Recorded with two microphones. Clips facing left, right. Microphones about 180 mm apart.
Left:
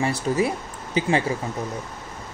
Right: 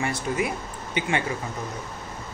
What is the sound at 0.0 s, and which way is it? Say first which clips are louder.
Speech: left 4 dB; 30° left (ahead or behind).